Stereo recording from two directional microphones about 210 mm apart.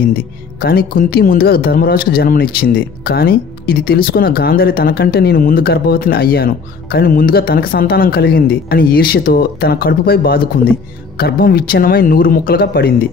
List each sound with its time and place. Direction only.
0.1 s speech: 45° left (ahead or behind)